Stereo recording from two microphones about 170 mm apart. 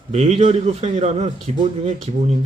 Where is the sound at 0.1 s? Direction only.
40° right (ahead or behind).